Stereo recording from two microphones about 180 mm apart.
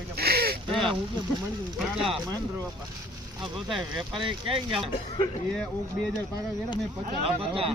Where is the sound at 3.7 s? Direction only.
Centre (ahead or behind).